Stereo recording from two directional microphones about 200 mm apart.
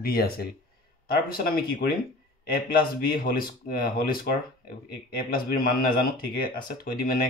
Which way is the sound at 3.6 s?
50° left (ahead or behind).